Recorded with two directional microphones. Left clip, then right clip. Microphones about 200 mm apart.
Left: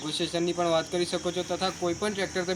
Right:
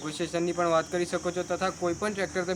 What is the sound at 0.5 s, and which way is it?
Speech, 5° left (ahead or behind).